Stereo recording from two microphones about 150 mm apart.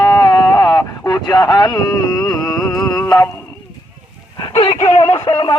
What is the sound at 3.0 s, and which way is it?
Speech, 20° left (ahead or behind).